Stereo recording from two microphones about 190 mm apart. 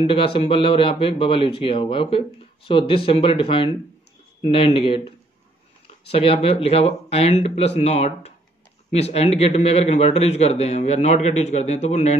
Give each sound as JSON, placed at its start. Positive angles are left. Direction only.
{"t": 0.0, "sound": "a man's voice", "side_deg": 30}